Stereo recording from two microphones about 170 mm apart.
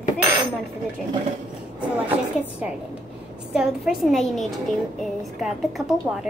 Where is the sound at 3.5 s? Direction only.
Centre (ahead or behind).